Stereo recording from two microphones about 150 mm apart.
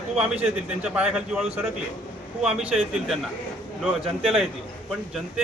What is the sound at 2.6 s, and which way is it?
A man's voice, 5° right (ahead or behind).